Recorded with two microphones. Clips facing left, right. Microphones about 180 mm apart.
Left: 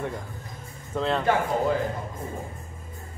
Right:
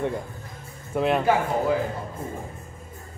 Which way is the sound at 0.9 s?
15° right (ahead or behind).